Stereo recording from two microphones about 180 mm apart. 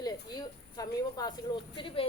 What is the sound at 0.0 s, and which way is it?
Speech, 20° left (ahead or behind).